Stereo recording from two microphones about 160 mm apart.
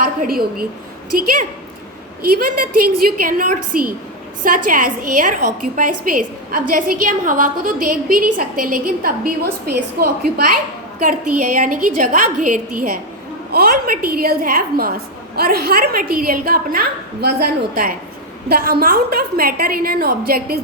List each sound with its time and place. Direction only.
0.0 s a woman's voice: 65° right (ahead or behind)
11.0 s a woman's voice: 55° right (ahead or behind)
13.5 s a woman's voice: 70° right (ahead or behind)